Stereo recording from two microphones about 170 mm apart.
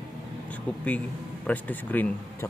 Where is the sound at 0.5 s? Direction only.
10° left (ahead or behind).